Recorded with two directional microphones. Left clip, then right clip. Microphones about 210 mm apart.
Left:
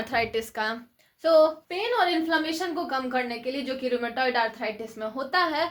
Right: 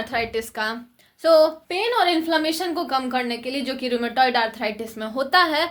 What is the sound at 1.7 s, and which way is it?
A woman's voice, 45° right (ahead or behind).